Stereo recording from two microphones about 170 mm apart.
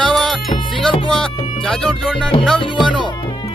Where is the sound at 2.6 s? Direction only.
30° left (ahead or behind).